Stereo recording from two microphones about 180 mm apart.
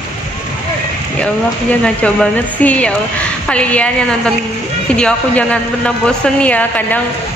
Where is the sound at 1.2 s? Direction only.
5° left (ahead or behind).